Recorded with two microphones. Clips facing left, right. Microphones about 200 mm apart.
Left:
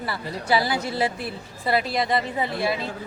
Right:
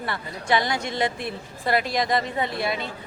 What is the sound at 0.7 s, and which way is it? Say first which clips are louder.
Speech: left 1 dB; 35° left (ahead or behind).